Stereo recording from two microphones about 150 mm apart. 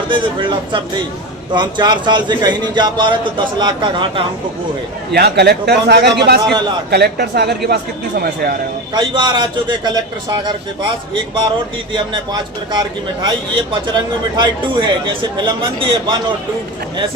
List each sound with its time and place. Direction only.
0.1 s a man's voice: 35° right (ahead or behind)
5.1 s speech: 90° right
6.4 s a man's voice: 30° right (ahead or behind)
6.9 s speech: 90° right
8.9 s a man's voice: 30° right (ahead or behind)